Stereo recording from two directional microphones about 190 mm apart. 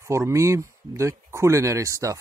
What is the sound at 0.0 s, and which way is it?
Speech, 15° right (ahead or behind).